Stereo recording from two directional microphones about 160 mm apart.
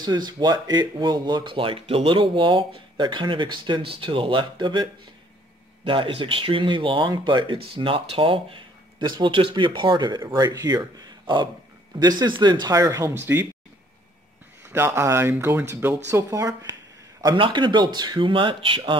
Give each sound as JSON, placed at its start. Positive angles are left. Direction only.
{"t": 0.0, "sound": "speech", "side_deg": -25}
{"t": 5.9, "sound": "speech", "side_deg": -35}
{"t": 14.7, "sound": "speech", "side_deg": -15}